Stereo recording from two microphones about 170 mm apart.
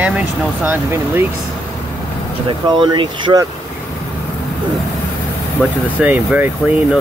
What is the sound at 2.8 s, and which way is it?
Speech, 25° right (ahead or behind).